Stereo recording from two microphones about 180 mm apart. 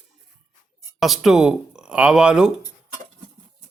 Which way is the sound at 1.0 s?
Centre (ahead or behind).